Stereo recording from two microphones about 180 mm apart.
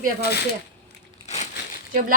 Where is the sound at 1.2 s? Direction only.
40° left (ahead or behind).